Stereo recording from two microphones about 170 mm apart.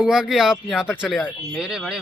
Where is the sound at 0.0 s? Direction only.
5° right (ahead or behind).